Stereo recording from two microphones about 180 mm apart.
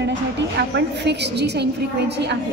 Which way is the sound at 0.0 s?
75° right (ahead or behind).